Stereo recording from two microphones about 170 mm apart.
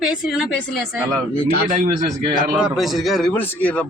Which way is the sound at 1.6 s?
50° right (ahead or behind).